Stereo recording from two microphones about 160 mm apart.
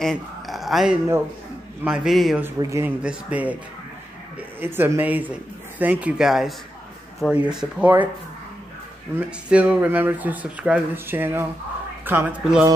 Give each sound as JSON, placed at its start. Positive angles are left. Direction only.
{"t": 0.0, "sound": "a sound", "side_deg": 0}
{"t": 1.9, "sound": "a man's voice", "side_deg": 0}
{"t": 2.4, "sound": "speech", "side_deg": -15}
{"t": 4.6, "sound": "speech", "side_deg": -15}
{"t": 9.1, "sound": "speech", "side_deg": -10}